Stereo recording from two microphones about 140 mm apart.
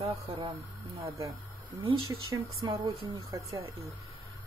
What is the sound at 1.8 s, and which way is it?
Speech, 40° right (ahead or behind).